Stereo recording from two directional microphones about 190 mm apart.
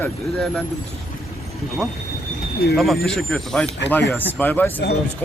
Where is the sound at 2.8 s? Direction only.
Centre (ahead or behind).